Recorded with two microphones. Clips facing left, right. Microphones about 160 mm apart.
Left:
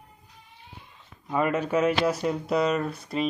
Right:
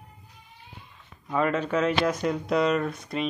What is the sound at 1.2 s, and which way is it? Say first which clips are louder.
Speech: even; 10° left (ahead or behind).